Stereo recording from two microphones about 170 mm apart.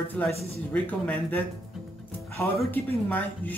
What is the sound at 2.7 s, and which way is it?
Speech, 10° left (ahead or behind).